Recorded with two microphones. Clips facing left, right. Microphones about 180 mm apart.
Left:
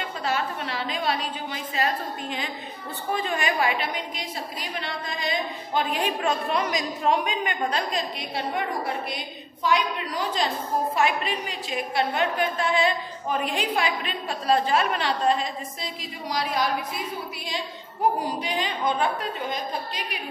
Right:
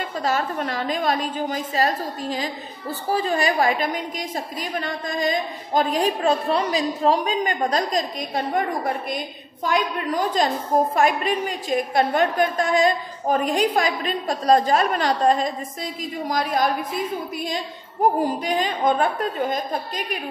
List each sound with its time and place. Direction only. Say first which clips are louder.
0.2 s a woman's voice: right 4 dB; 45° right (ahead or behind)
18.2 s a woman's voice: right 6 dB; 45° right (ahead or behind)